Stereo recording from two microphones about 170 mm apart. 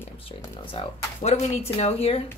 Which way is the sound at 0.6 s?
35° left (ahead or behind).